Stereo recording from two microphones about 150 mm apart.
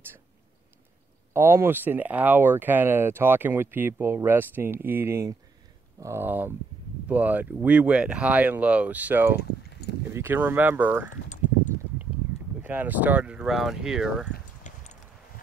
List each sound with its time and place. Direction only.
1.3 s speech: 15° right (ahead or behind)
9.4 s keys jangling: 90° left
10.1 s speech: 15° right (ahead or behind)
11.2 s a sound: 55° left (ahead or behind)
12.6 s speech: 10° right (ahead or behind)
14.6 s a sound: 55° left (ahead or behind)